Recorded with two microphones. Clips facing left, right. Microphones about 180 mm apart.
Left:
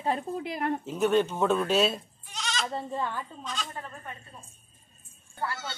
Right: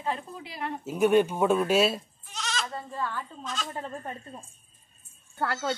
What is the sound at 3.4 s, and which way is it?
Speech, centre (ahead or behind).